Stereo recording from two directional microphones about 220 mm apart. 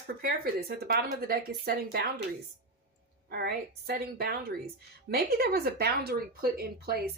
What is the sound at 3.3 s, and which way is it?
A woman's voice, 45° right (ahead or behind).